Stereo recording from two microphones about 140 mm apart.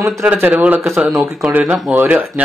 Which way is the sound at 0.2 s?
10° right (ahead or behind).